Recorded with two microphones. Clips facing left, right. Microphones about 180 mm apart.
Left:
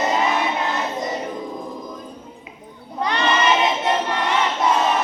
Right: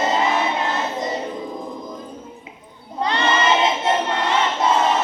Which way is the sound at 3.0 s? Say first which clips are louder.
Even; 25° right (ahead or behind).